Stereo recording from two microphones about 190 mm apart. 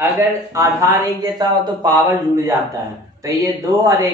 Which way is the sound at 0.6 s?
20° right (ahead or behind).